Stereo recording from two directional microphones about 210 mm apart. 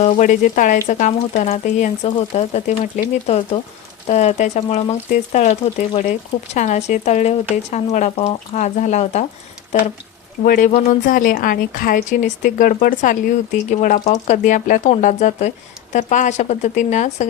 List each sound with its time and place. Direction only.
0.0 s speech: 35° left (ahead or behind)
10.4 s speech: 40° left (ahead or behind)